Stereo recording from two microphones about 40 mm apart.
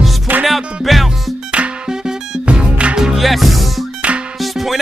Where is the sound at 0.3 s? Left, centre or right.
Right.